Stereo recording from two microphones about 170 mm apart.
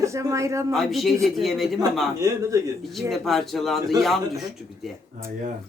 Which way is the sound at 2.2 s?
20° right (ahead or behind).